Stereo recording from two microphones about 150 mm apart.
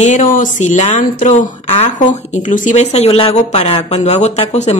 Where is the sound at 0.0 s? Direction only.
60° left (ahead or behind).